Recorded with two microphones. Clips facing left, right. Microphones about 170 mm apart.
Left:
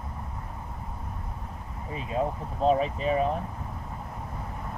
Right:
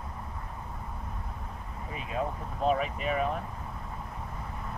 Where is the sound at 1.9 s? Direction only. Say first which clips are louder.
Left 4 dB; 30° left (ahead or behind).